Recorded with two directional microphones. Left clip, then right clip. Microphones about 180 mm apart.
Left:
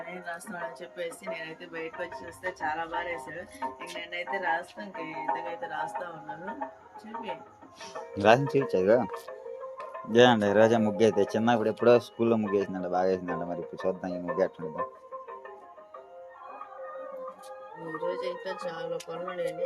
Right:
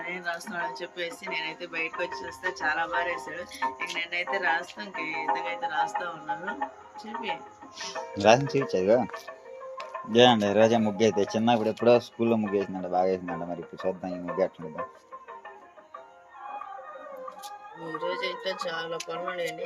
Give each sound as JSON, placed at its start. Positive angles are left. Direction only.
{"t": 0.0, "sound": "speech", "side_deg": 15}
{"t": 7.8, "sound": "speech", "side_deg": 15}
{"t": 8.5, "sound": "speech", "side_deg": 0}
{"t": 17.8, "sound": "speech", "side_deg": 15}